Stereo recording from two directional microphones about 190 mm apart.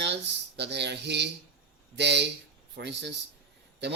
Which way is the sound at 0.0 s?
65° right (ahead or behind).